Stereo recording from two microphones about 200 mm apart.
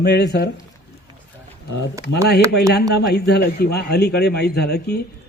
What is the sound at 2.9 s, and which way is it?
A man's voice, 55° left (ahead or behind).